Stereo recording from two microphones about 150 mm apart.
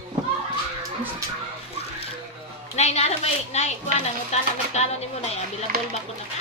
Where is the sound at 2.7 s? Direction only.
45° left (ahead or behind).